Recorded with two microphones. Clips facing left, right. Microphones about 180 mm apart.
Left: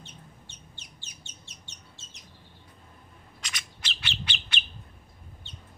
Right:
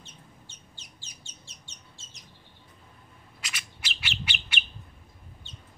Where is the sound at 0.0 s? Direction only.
60° left (ahead or behind).